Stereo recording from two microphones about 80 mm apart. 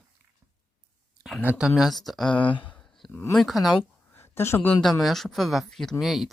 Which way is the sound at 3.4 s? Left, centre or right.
Centre.